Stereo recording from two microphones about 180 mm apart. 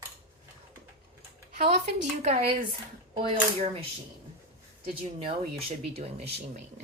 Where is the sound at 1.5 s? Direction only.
60° right (ahead or behind).